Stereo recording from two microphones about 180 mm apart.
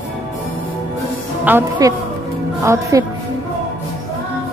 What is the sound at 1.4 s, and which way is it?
Speech, 10° right (ahead or behind).